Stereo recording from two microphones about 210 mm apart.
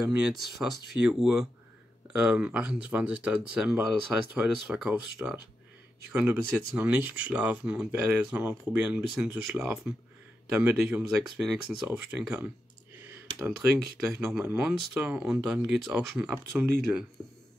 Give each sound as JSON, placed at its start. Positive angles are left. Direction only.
{"t": 0.0, "sound": "speech", "side_deg": 0}
{"t": 14.2, "sound": "speech", "side_deg": -5}